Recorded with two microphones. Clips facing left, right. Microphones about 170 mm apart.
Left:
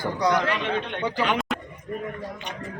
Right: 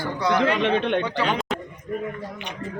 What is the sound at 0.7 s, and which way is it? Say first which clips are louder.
Speech: right 7 dB; 85° right.